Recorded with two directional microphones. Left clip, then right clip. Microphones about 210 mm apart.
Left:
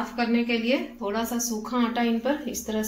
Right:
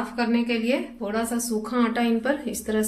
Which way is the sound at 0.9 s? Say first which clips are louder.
Right 1 dB; 25° right (ahead or behind).